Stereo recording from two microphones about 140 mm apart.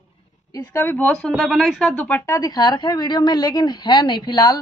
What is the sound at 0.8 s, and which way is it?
A woman's voice, 10° left (ahead or behind).